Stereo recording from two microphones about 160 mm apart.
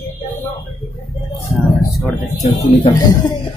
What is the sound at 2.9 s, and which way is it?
Speech, 25° left (ahead or behind).